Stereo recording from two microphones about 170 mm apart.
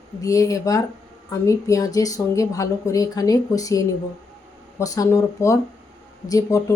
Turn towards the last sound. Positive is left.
turn(degrees=20)  # may be behind; listen again after turning